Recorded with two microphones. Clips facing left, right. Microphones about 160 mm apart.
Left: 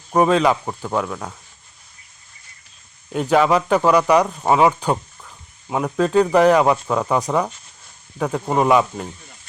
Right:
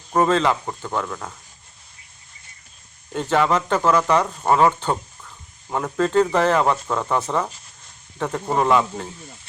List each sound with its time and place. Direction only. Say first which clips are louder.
0.1 s speech: left 3 dB; 10° left (ahead or behind)
3.1 s speech: left 3 dB; 15° left (ahead or behind)